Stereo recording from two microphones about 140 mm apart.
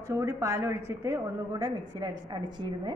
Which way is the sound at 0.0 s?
20° right (ahead or behind).